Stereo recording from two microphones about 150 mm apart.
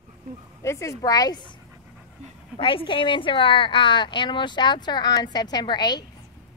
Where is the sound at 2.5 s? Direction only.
35° left (ahead or behind).